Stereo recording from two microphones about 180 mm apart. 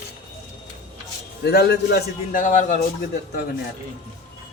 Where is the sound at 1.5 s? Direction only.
65° left (ahead or behind).